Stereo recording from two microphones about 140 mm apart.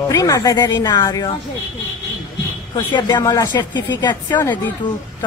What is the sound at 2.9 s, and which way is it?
Speech, 30° left (ahead or behind).